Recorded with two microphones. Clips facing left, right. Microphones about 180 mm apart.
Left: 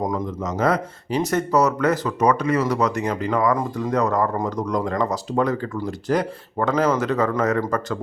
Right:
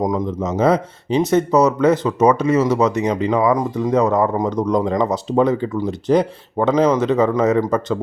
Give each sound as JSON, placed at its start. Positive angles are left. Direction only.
{"t": 0.0, "sound": "speech", "side_deg": -15}